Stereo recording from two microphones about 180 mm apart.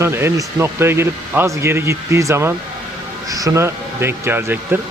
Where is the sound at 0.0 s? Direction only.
15° right (ahead or behind).